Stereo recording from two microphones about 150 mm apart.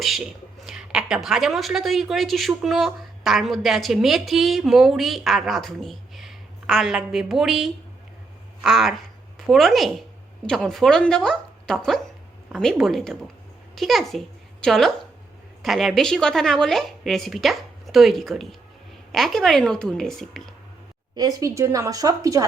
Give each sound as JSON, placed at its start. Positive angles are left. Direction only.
{"t": 0.6, "sound": "a woman's voice", "side_deg": -5}
{"t": 21.2, "sound": "speech", "side_deg": -25}